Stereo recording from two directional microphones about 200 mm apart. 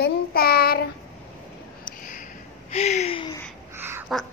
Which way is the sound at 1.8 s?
40° left (ahead or behind).